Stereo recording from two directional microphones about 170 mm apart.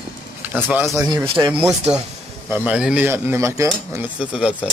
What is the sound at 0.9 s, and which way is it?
Speech, 25° right (ahead or behind).